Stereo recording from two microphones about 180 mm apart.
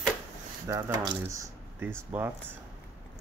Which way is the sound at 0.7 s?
15° right (ahead or behind).